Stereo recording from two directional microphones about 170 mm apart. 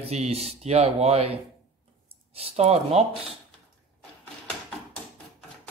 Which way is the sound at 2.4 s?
40° right (ahead or behind).